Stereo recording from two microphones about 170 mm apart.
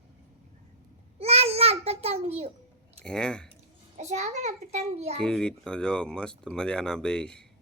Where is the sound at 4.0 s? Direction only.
40° right (ahead or behind).